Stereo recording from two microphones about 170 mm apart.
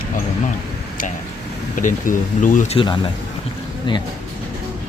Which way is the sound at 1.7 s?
50° left (ahead or behind).